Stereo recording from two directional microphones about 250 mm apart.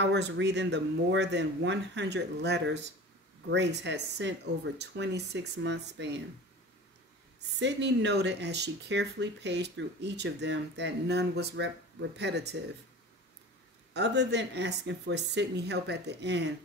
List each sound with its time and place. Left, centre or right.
0.0 s speech: right
7.3 s speech: right
13.9 s speech: right